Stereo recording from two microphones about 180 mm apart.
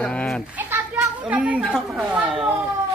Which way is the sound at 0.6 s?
10° right (ahead or behind).